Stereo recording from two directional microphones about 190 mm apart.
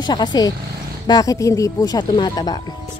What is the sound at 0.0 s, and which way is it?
Speech, 20° left (ahead or behind).